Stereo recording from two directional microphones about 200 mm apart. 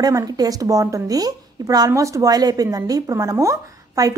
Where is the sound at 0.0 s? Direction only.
20° right (ahead or behind).